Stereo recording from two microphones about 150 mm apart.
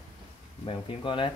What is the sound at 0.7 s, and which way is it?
Speech, 35° left (ahead or behind).